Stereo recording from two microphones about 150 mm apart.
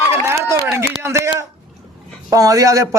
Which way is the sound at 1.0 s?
20° right (ahead or behind).